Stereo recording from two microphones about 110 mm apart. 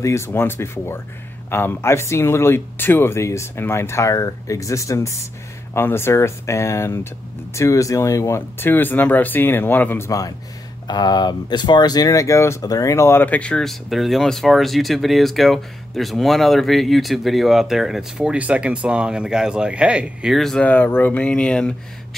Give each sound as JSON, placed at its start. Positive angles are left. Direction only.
{"t": 0.0, "sound": "speech", "side_deg": 25}
{"t": 20.6, "sound": "speech", "side_deg": 15}